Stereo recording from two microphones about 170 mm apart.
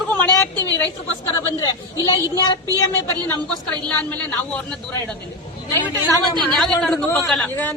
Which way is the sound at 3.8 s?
5° left (ahead or behind).